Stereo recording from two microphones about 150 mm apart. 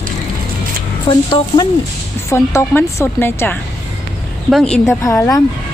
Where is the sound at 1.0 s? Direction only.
30° left (ahead or behind).